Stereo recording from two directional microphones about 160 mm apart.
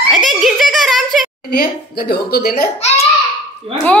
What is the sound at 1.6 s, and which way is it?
Speech, 75° left (ahead or behind).